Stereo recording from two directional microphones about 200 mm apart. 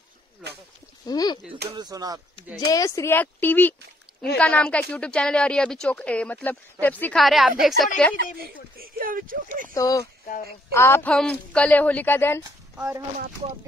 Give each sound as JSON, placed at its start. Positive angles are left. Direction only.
{"t": 1.0, "sound": "speech", "side_deg": 20}
{"t": 1.7, "sound": "speech", "side_deg": -20}
{"t": 2.6, "sound": "speech", "side_deg": 15}
{"t": 8.7, "sound": "speech", "side_deg": -45}
{"t": 9.8, "sound": "speech", "side_deg": 15}